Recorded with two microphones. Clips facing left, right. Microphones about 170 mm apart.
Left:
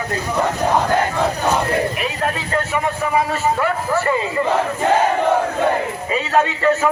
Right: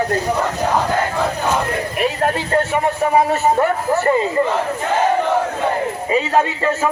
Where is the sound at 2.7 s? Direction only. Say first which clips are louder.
Right 3 dB; 45° right (ahead or behind).